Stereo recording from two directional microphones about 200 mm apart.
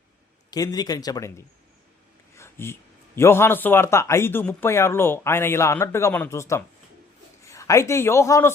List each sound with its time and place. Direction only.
0.5 s speech: 20° left (ahead or behind)
2.3 s a sound: 15° left (ahead or behind)
3.2 s a man's voice: 10° left (ahead or behind)